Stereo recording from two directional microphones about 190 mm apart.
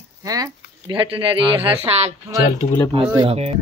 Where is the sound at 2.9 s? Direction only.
30° right (ahead or behind).